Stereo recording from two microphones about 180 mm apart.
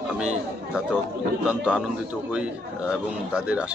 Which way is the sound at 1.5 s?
5° right (ahead or behind).